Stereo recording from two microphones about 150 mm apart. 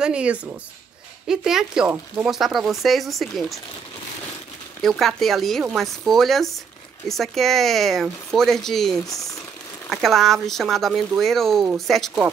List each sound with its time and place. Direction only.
0.0 s speech: 5° right (ahead or behind)
4.8 s speech: centre (ahead or behind)